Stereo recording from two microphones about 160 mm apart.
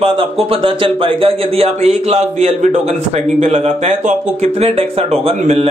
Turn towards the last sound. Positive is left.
turn(degrees=-40)  # may be behind; listen again after turning